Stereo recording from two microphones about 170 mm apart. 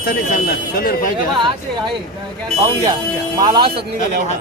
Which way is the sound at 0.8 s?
60° left (ahead or behind).